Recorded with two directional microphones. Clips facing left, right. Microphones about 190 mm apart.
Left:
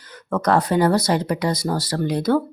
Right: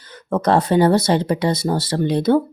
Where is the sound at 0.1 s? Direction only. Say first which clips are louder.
Right 2 dB; 25° right (ahead or behind).